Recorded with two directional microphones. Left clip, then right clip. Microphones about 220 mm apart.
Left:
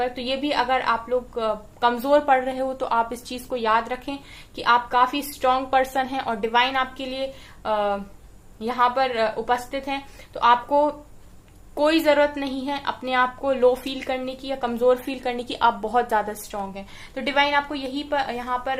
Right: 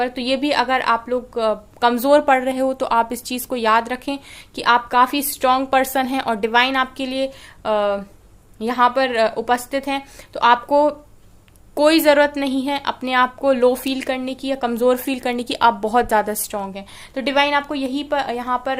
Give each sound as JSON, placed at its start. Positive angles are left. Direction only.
{"t": 0.0, "sound": "a woman's voice", "side_deg": -50}